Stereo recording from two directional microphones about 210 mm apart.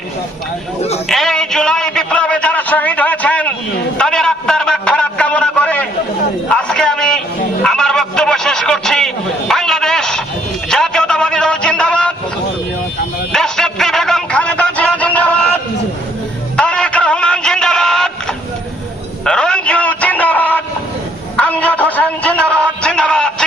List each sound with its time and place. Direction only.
0.8 s speech: 30° left (ahead or behind)
1.0 s a sound: centre (ahead or behind)
10.7 s music: 5° left (ahead or behind)
13.3 s music: centre (ahead or behind)
16.6 s music: 5° left (ahead or behind)
19.2 s a sound: 5° left (ahead or behind)